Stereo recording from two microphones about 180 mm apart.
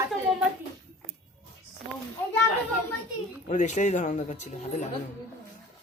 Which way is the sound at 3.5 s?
40° left (ahead or behind).